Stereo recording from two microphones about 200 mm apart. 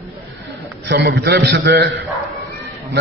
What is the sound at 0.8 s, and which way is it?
A man's voice, 55° right (ahead or behind).